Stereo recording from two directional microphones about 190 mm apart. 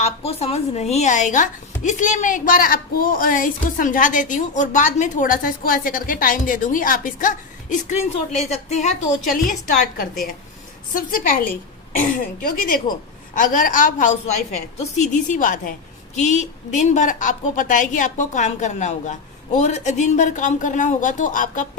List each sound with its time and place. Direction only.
0.0 s speech: 30° left (ahead or behind)
10.0 s a woman's voice: 50° left (ahead or behind)